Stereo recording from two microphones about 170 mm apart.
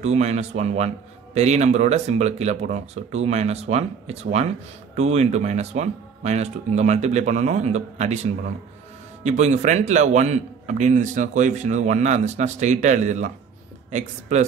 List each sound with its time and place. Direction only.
0.0 s a man's voice: 40° right (ahead or behind)
14.3 s a man's voice: 45° right (ahead or behind)